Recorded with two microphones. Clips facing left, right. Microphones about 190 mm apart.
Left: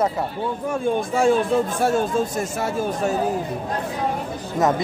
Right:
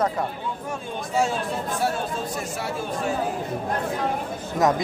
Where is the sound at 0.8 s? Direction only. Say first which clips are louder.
Left 6 dB; 55° left (ahead or behind).